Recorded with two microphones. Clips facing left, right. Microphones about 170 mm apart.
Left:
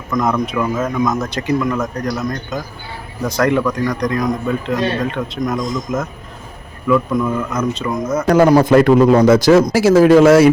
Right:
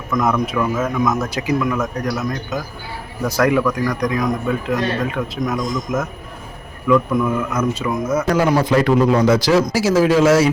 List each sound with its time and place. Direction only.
0.1 s speech: 5° right (ahead or behind)
8.4 s a man's voice: 35° left (ahead or behind)
8.7 s a man's voice: 50° left (ahead or behind)